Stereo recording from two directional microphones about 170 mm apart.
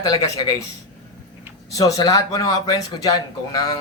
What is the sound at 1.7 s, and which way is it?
Speech, 20° left (ahead or behind).